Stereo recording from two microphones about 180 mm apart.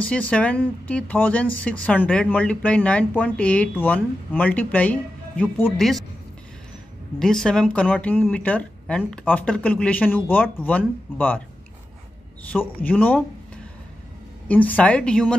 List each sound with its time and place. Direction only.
0.1 s a woman's voice: 5° left (ahead or behind)
7.2 s speech: 5° left (ahead or behind)
12.5 s speech: 10° left (ahead or behind)
14.5 s speech: 10° left (ahead or behind)